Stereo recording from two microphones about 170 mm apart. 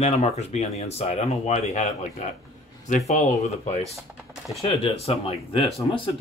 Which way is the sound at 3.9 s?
Centre (ahead or behind).